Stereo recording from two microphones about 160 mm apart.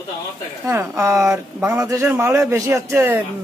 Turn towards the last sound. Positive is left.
turn(degrees=-15)  # may be behind; listen again after turning